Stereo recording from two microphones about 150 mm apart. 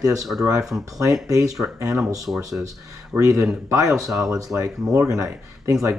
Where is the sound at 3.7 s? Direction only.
20° right (ahead or behind).